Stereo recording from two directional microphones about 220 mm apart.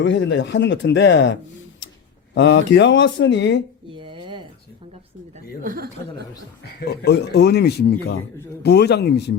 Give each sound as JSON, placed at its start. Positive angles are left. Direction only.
{"t": 0.0, "sound": "speech", "side_deg": 55}
{"t": 3.8, "sound": "a sound", "side_deg": -20}
{"t": 5.6, "sound": "a woman's voice", "side_deg": -40}
{"t": 6.7, "sound": "speech", "side_deg": 50}